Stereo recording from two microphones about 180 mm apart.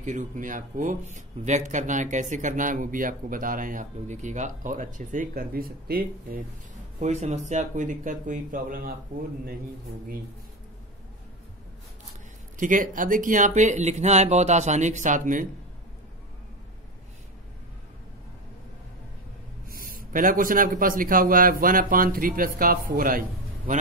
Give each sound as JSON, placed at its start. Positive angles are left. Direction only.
{"t": 0.0, "sound": "speech", "side_deg": -45}
{"t": 7.0, "sound": "speech", "side_deg": -40}
{"t": 12.5, "sound": "speech", "side_deg": -45}
{"t": 19.7, "sound": "speech", "side_deg": -50}